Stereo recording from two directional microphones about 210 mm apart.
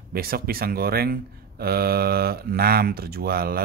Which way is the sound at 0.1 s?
45° right (ahead or behind).